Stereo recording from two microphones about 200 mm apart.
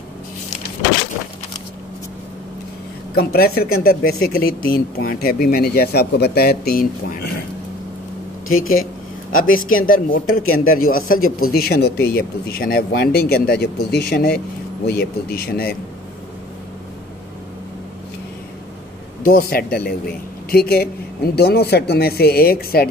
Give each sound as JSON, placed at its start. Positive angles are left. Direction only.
{"t": 3.2, "sound": "speech", "side_deg": 50}
{"t": 8.5, "sound": "speech", "side_deg": 90}
{"t": 9.3, "sound": "speech", "side_deg": 45}
{"t": 10.4, "sound": "speech", "side_deg": 90}
{"t": 11.5, "sound": "speech", "side_deg": 50}
{"t": 19.2, "sound": "speech", "side_deg": 50}